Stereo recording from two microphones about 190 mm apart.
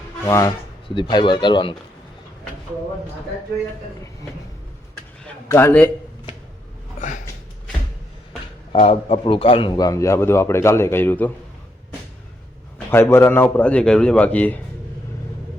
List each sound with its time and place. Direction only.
0.3 s a man's voice: 15° left (ahead or behind)
0.9 s speech: 25° left (ahead or behind)
5.2 s speech: 15° left (ahead or behind)
8.7 s a man's voice: 30° left (ahead or behind); by 11.3 s 10° left (ahead or behind)
12.9 s a man's voice: 15° left (ahead or behind)